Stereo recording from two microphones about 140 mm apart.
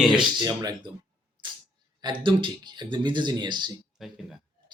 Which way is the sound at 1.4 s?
35° right (ahead or behind).